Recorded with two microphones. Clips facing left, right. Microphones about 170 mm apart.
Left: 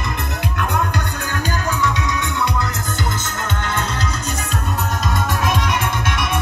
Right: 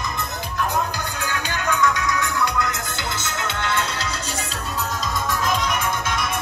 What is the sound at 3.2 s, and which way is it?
Music, 45° left (ahead or behind).